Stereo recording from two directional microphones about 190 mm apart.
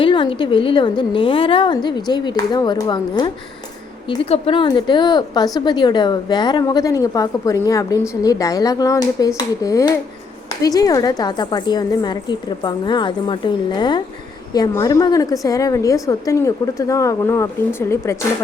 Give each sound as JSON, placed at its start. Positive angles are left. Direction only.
{"t": 0.0, "sound": "a woman's voice", "side_deg": 25}